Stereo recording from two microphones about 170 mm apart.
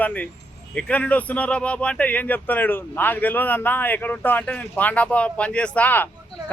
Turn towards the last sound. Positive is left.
turn(degrees=10)  # may be behind; listen again after turning